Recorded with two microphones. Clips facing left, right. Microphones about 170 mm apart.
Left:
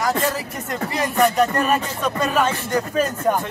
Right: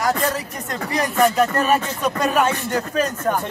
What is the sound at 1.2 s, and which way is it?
Speech, 5° right (ahead or behind).